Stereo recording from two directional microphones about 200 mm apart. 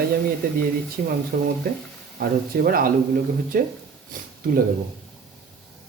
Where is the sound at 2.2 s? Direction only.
50° right (ahead or behind).